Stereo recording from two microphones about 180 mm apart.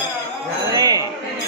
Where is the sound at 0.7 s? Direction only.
20° right (ahead or behind).